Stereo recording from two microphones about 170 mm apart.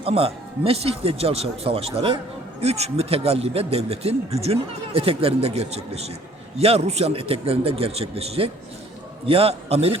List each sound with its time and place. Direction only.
0.0 s speech: 35° right (ahead or behind)